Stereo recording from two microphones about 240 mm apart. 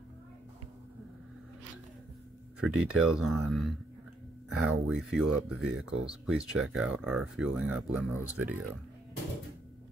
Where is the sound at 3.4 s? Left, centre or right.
Centre.